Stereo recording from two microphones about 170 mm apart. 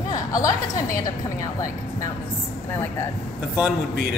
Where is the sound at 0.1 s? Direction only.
20° left (ahead or behind).